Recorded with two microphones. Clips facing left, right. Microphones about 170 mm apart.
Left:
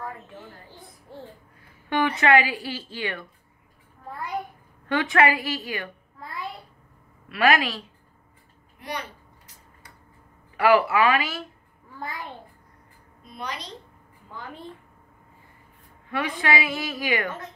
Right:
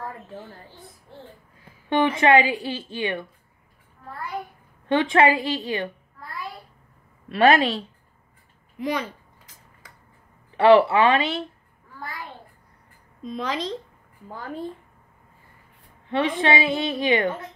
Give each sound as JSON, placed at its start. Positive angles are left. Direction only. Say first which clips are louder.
{"t": 1.9, "sound": "speech", "louder": "right 3 dB", "side_deg": -25}
{"t": 4.8, "sound": "speech", "louder": "right 3 dB", "side_deg": -25}
{"t": 7.2, "sound": "a woman's voice", "louder": "right 4 dB", "side_deg": -30}
{"t": 8.7, "sound": "speech", "louder": "right 8 dB", "side_deg": -90}
{"t": 9.8, "sound": "a sound", "louder": "right 1 dB", "side_deg": -90}
{"t": 10.5, "sound": "speech", "louder": "right 4 dB", "side_deg": -30}
{"t": 13.2, "sound": "a woman's voice", "louder": "right 8 dB", "side_deg": -90}
{"t": 14.3, "sound": "a woman's voice", "louder": "right 5 dB", "side_deg": -40}
{"t": 16.1, "sound": "speech", "louder": "right 4 dB", "side_deg": -25}